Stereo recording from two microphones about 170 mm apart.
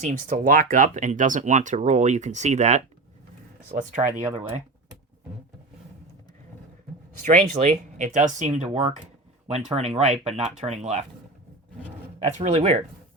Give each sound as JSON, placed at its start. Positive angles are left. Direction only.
{"t": 0.0, "sound": "speech", "side_deg": -45}
{"t": 7.2, "sound": "speech", "side_deg": -45}
{"t": 12.4, "sound": "speech", "side_deg": -40}